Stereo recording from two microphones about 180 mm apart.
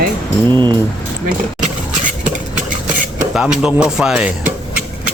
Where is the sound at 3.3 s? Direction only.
5° right (ahead or behind).